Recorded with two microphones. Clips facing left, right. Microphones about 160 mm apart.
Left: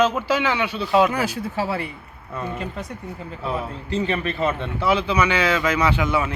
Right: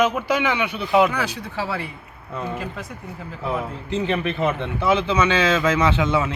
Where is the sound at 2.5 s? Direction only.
Centre (ahead or behind).